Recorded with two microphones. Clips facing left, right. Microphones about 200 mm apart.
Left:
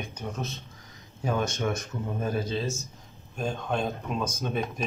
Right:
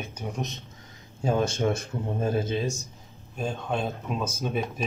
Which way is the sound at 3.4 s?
Centre (ahead or behind).